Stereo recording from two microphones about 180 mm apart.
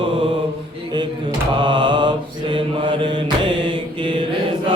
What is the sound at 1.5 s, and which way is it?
Mantra, 25° right (ahead or behind).